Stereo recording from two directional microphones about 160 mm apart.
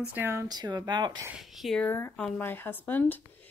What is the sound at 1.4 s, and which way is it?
Speech, centre (ahead or behind).